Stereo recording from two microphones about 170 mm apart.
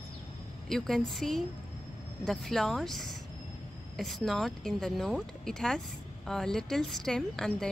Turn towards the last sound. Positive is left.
turn(degrees=5)  # may be behind; listen again after turning